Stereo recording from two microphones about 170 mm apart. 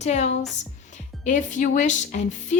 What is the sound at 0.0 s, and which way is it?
A woman's voice, 40° left (ahead or behind).